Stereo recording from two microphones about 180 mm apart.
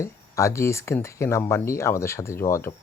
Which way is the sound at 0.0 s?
15° left (ahead or behind).